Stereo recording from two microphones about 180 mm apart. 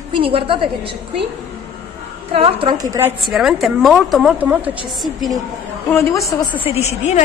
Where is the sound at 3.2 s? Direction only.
Centre (ahead or behind).